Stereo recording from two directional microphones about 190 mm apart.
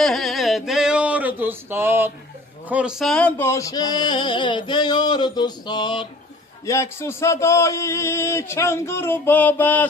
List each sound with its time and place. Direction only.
0.0 s male singing: centre (ahead or behind)
2.7 s a sound: 5° right (ahead or behind); by 6.0 s 25° left (ahead or behind)
6.6 s a man's voice: 15° left (ahead or behind)